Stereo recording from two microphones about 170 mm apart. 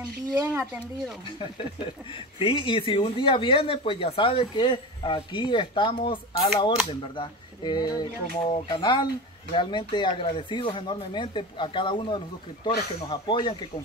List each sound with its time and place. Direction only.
0.3 s speech: 15° right (ahead or behind)
1.4 s speech: 30° left (ahead or behind)